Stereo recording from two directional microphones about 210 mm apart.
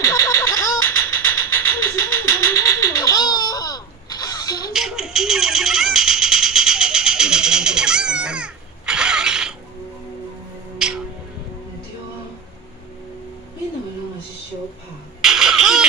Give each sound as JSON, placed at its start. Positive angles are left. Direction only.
{"t": 0.0, "sound": "a sound", "side_deg": 15}
{"t": 4.7, "sound": "meow", "side_deg": 0}
{"t": 10.8, "sound": "music", "side_deg": -5}
{"t": 15.2, "sound": "baby laughter", "side_deg": 0}